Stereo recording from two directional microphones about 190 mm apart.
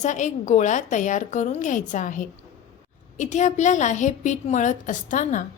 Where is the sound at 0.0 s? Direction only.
40° left (ahead or behind).